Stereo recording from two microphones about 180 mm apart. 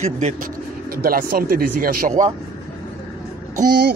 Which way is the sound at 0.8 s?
55° right (ahead or behind).